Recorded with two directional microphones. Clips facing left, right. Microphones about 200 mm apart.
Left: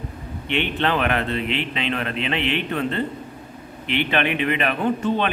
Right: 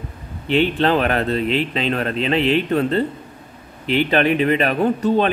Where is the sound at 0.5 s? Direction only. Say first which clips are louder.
Right 6 dB; 35° right (ahead or behind).